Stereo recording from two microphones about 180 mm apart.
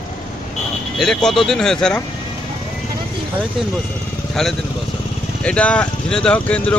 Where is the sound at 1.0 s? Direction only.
5° left (ahead or behind).